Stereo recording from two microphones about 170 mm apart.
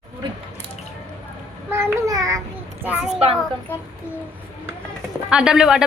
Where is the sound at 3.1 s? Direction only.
35° right (ahead or behind).